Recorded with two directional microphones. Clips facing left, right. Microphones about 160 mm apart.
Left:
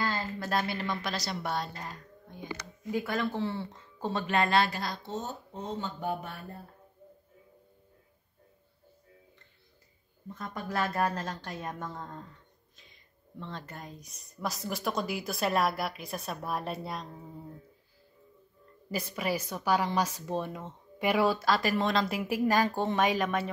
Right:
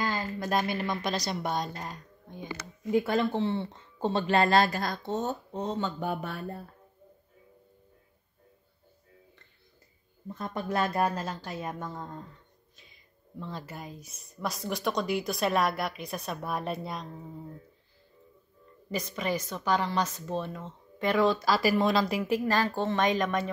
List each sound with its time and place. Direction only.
0.0 s speech: 15° right (ahead or behind); by 6.6 s 90° right
10.3 s speech: 30° right (ahead or behind); by 12.3 s 5° right (ahead or behind)
13.4 s speech: 10° right (ahead or behind)
18.9 s a woman's voice: 5° left (ahead or behind)
21.5 s speech: centre (ahead or behind)
22.2 s a woman's voice: 10° left (ahead or behind)